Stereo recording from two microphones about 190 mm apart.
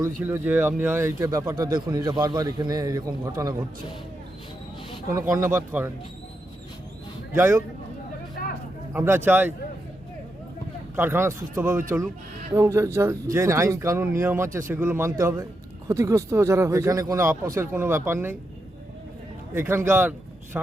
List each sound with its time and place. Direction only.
0.2 s speech: 10° right (ahead or behind)
5.3 s speech: 15° right (ahead or behind)
7.3 s speech: 15° right (ahead or behind)
8.4 s a sound: 55° left (ahead or behind)
8.9 s speech: 10° right (ahead or behind)
10.9 s speech: 10° right (ahead or behind)
19.5 s speech: 15° right (ahead or behind)